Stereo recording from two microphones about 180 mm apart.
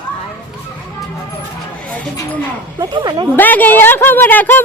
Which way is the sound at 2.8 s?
25° right (ahead or behind).